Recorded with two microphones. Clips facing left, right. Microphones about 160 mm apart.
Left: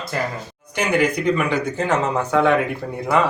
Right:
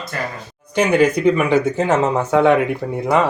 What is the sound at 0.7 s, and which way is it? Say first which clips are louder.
Speech: right 5 dB; 30° right (ahead or behind).